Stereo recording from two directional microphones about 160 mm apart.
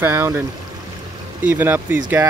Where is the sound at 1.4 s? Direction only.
10° right (ahead or behind).